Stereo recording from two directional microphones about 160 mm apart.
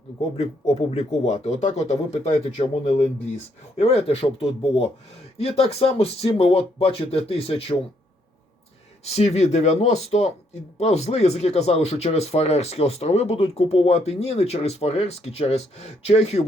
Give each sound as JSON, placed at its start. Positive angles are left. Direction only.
{"t": 0.3, "sound": "speech", "side_deg": 45}
{"t": 9.0, "sound": "speech", "side_deg": 40}